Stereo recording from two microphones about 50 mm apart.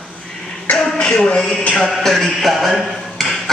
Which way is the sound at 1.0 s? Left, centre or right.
Left.